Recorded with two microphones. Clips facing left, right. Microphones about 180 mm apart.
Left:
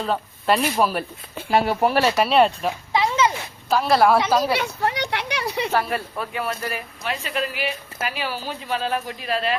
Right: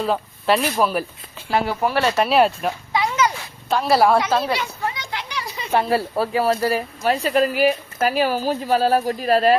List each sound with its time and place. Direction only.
0.0 s speech: centre (ahead or behind)
1.5 s speech: 20° left (ahead or behind)
2.0 s speech: centre (ahead or behind)
2.9 s a sound: 25° left (ahead or behind)
3.7 s speech: centre (ahead or behind)
4.5 s a sound: 65° left (ahead or behind)
5.7 s speech: 30° right (ahead or behind)